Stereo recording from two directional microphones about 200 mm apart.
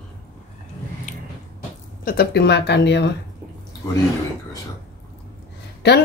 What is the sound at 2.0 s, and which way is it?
Speech, 50° left (ahead or behind).